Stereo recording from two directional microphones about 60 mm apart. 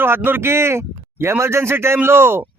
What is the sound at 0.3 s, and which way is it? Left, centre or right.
Speech, right.